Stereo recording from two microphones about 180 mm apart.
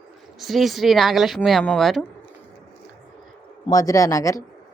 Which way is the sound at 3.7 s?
20° left (ahead or behind).